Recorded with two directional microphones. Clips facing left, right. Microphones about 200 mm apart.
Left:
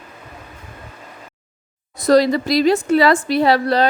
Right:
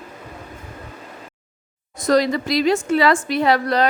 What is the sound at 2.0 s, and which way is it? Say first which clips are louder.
A woman's voice: left 4 dB; 35° left (ahead or behind).